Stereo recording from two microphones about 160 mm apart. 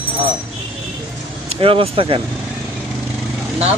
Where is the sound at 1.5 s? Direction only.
35° right (ahead or behind).